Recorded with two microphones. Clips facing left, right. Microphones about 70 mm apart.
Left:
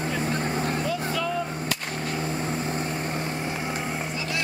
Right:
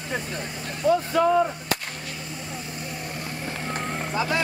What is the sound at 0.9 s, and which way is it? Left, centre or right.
Vehicle, right.